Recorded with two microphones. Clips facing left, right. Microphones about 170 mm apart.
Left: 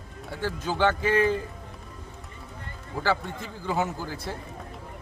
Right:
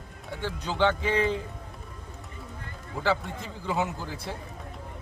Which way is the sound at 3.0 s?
Centre (ahead or behind).